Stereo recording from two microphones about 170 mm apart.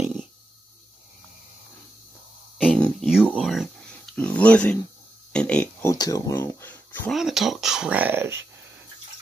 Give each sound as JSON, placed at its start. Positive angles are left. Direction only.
{"t": 0.0, "sound": "a sound", "side_deg": 0}
{"t": 2.6, "sound": "speech", "side_deg": 0}
{"t": 7.1, "sound": "speech", "side_deg": 0}